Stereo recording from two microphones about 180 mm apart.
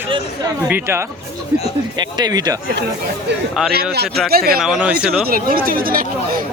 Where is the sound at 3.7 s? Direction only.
60° right (ahead or behind).